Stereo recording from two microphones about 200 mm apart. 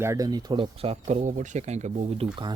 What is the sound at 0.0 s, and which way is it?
Speech, 15° right (ahead or behind).